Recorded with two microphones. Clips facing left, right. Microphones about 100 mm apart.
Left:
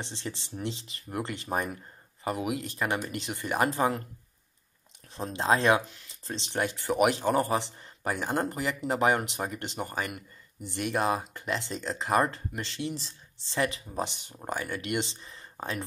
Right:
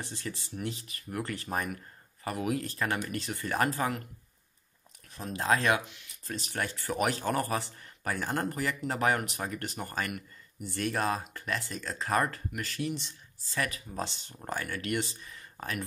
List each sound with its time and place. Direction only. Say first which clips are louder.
0.0 s speech: left 2 dB; 25° left (ahead or behind)
5.1 s speech: left 3 dB; 25° left (ahead or behind)